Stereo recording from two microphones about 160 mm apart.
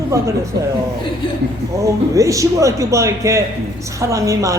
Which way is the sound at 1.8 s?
20° right (ahead or behind).